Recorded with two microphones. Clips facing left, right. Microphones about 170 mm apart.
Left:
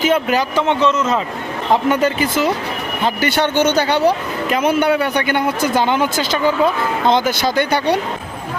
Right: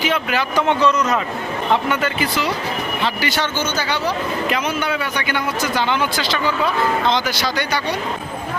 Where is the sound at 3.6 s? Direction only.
65° left (ahead or behind).